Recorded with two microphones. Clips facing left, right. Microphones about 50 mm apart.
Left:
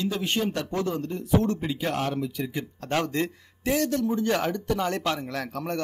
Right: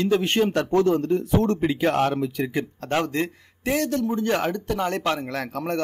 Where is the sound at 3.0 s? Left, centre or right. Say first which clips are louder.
Right 2 dB; right.